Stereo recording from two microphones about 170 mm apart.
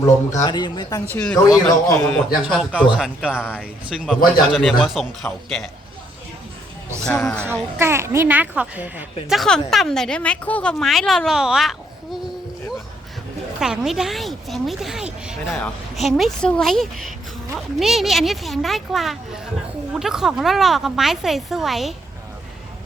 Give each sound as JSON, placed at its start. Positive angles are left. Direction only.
{"t": 0.3, "sound": "speech", "side_deg": 25}
{"t": 1.1, "sound": "speech", "side_deg": 5}
{"t": 2.4, "sound": "a woman's voice", "side_deg": -5}
{"t": 7.0, "sound": "speech", "side_deg": 10}
{"t": 7.8, "sound": "a child's voice", "side_deg": -15}
{"t": 9.3, "sound": "a woman's voice", "side_deg": 0}
{"t": 13.6, "sound": "a woman's voice", "side_deg": -5}